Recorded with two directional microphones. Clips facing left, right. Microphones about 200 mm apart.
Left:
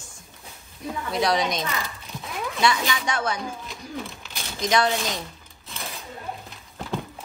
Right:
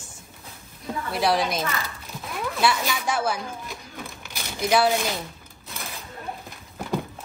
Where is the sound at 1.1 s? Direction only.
5° right (ahead or behind).